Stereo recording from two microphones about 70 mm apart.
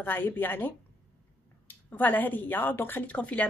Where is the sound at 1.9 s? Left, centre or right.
Left.